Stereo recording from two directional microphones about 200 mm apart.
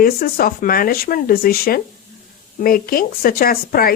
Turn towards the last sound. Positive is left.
turn(degrees=50)  # may be behind; listen again after turning